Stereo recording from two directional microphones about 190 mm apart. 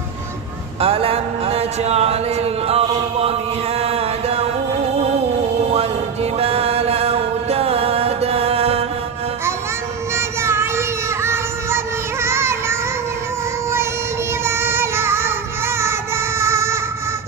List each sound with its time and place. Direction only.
0.7 s a sound: 30° right (ahead or behind)
3.8 s mantra: 30° right (ahead or behind)
6.3 s music: 30° right (ahead or behind)
10.1 s child singing: 15° right (ahead or behind)
14.4 s music: 10° right (ahead or behind)
15.8 s child singing: 15° right (ahead or behind)